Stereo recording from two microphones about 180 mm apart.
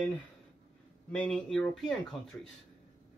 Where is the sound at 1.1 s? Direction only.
5° left (ahead or behind).